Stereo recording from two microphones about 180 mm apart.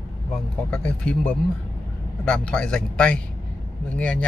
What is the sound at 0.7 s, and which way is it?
Speech, 5° left (ahead or behind).